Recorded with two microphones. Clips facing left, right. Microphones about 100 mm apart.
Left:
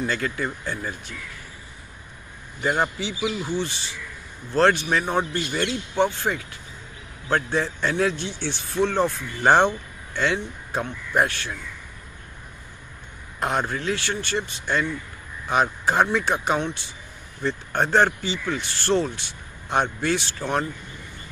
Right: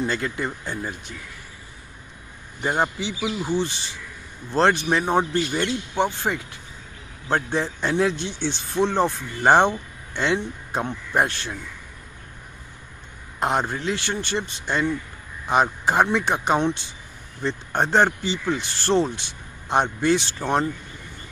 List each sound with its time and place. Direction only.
0.0 s speech: 25° right (ahead or behind)
2.6 s speech: 20° right (ahead or behind)
13.4 s speech: 20° right (ahead or behind)